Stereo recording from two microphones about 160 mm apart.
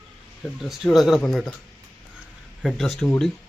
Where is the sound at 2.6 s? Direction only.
Centre (ahead or behind).